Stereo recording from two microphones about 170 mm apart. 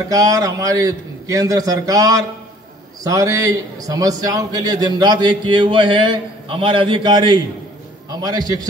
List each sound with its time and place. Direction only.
0.1 s a man's voice: 20° right (ahead or behind)